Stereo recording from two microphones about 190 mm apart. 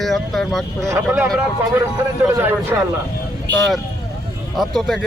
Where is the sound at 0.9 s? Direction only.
10° right (ahead or behind).